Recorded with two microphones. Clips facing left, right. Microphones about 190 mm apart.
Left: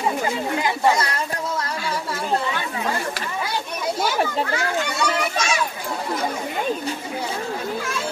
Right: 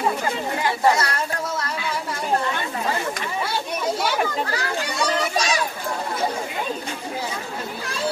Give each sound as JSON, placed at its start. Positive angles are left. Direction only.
{"t": 4.5, "sound": "a child's voice", "side_deg": -35}